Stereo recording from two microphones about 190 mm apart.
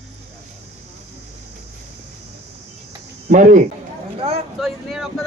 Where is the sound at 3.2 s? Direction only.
40° right (ahead or behind).